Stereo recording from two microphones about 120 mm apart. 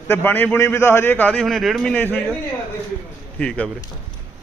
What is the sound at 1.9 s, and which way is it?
Speech, 15° left (ahead or behind).